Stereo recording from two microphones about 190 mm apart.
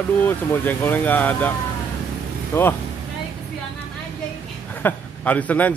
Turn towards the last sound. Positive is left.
turn(degrees=10)  # may be behind; listen again after turning